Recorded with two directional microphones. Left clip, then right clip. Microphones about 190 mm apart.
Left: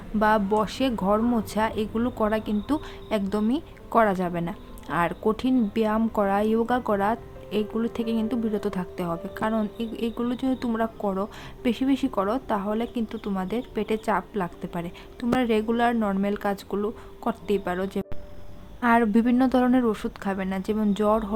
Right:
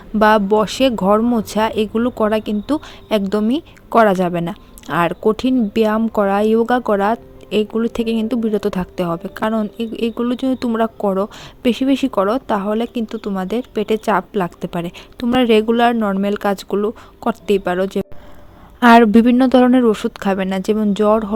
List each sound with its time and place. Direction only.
0.2 s speech: 40° right (ahead or behind)
18.8 s speech: 50° right (ahead or behind); by 21.3 s 35° right (ahead or behind)